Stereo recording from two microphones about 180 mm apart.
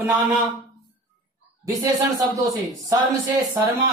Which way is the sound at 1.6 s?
20° right (ahead or behind).